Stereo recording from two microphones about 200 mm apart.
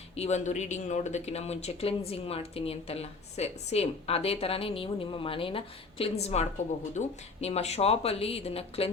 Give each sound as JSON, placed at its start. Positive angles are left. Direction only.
{"t": 0.2, "sound": "speech", "side_deg": 35}